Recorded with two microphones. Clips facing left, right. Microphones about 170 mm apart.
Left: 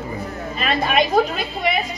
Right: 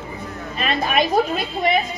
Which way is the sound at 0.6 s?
Centre (ahead or behind).